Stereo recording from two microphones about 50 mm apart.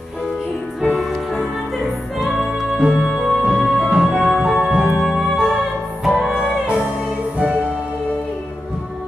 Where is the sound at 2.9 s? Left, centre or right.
Centre.